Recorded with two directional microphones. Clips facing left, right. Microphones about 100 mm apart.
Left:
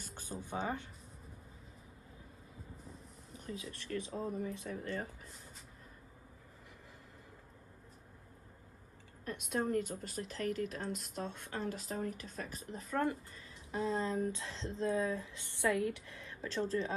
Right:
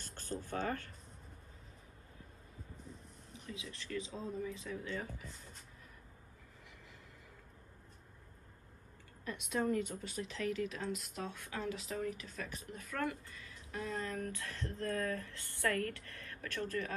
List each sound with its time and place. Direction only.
0.0 s speech: 10° left (ahead or behind)
3.3 s a sound: 40° left (ahead or behind)
3.7 s speech: 50° left (ahead or behind)
9.5 s speech: 40° left (ahead or behind)